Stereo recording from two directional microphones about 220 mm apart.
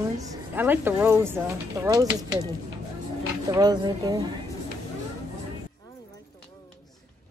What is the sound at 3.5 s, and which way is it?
Speech, 20° right (ahead or behind).